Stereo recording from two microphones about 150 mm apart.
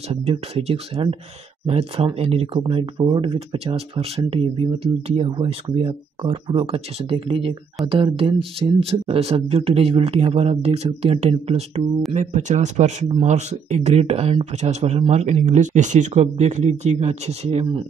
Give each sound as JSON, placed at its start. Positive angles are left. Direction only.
{"t": 0.1, "sound": "speech", "side_deg": -40}
{"t": 12.1, "sound": "speech", "side_deg": -50}